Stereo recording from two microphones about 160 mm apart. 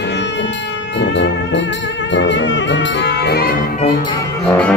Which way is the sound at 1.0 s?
90° left.